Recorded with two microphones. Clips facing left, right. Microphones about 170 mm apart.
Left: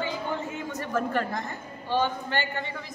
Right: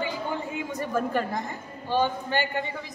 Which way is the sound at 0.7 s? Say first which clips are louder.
Right 1 dB; 15° right (ahead or behind).